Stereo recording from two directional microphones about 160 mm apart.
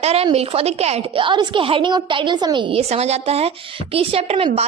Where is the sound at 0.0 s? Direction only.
40° right (ahead or behind).